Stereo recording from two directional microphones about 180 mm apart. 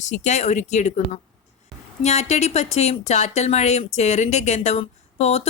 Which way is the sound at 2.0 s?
40° left (ahead or behind).